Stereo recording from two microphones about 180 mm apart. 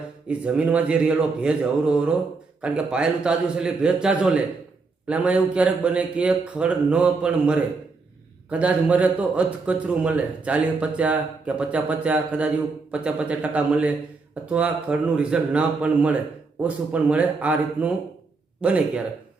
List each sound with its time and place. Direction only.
0.3 s a man's voice: 5° right (ahead or behind)